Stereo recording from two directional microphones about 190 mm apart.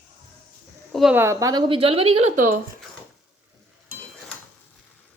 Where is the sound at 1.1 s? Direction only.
15° right (ahead or behind); by 2.5 s 40° right (ahead or behind).